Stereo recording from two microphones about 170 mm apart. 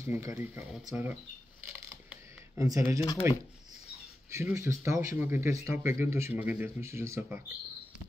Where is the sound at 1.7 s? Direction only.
10° right (ahead or behind).